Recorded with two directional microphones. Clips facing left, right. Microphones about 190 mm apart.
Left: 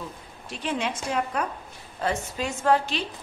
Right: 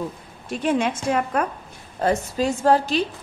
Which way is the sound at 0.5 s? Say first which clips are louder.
Right 7 dB; 50° right (ahead or behind).